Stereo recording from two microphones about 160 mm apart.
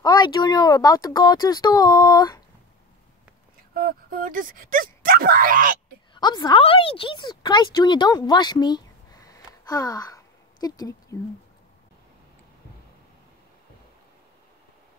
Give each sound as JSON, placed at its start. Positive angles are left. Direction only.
{"t": 0.0, "sound": "speech", "side_deg": 25}
{"t": 3.7, "sound": "speech", "side_deg": -60}
{"t": 6.1, "sound": "a woman's voice", "side_deg": 25}